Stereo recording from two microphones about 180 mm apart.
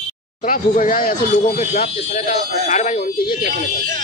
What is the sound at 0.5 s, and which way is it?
Speech, 50° left (ahead or behind).